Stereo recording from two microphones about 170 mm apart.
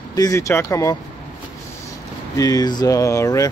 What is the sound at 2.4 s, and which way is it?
Speech, 20° left (ahead or behind).